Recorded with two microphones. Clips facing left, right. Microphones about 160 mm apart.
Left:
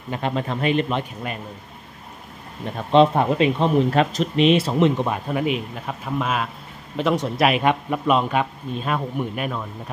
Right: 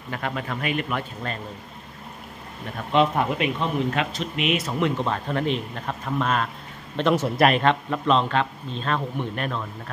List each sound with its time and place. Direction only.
0.1 s speech: 25° left (ahead or behind)
2.9 s a man's voice: 30° left (ahead or behind); by 9.7 s 10° left (ahead or behind)